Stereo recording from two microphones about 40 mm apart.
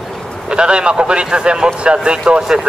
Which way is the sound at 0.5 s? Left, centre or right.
Right.